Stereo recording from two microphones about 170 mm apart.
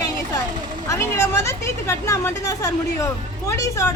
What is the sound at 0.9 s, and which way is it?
Speech, 15° left (ahead or behind).